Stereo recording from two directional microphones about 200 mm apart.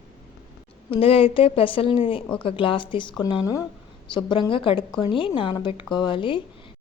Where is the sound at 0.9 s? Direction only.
30° left (ahead or behind).